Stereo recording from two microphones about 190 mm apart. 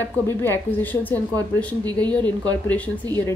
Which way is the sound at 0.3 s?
10° left (ahead or behind).